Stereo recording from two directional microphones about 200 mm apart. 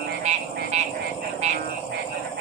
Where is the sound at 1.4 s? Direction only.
35° right (ahead or behind).